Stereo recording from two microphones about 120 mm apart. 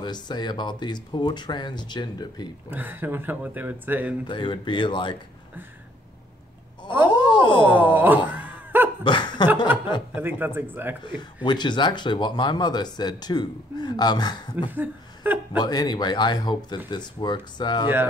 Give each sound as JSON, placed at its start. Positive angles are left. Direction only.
{"t": 0.0, "sound": "speech", "side_deg": 40}
{"t": 2.7, "sound": "speech", "side_deg": -15}
{"t": 4.3, "sound": "speech", "side_deg": 40}
{"t": 6.9, "sound": "a sound", "side_deg": -15}
{"t": 9.0, "sound": "laughter", "side_deg": 40}
{"t": 10.1, "sound": "speech", "side_deg": -15}
{"t": 11.4, "sound": "speech", "side_deg": 40}
{"t": 14.7, "sound": "laughter", "side_deg": -15}
{"t": 15.6, "sound": "speech", "side_deg": 35}